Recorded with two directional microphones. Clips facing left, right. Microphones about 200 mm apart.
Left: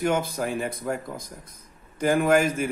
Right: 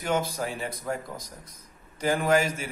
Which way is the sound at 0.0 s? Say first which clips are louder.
Left 3 dB; 55° left (ahead or behind).